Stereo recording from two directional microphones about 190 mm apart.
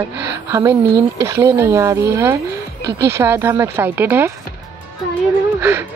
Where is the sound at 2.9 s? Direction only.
60° right (ahead or behind).